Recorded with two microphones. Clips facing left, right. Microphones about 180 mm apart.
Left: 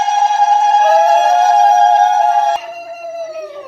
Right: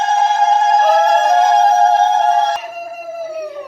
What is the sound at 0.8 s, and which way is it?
Music, 5° left (ahead or behind).